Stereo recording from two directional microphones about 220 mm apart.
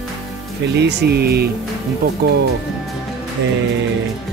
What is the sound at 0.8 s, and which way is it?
Speech, 50° right (ahead or behind).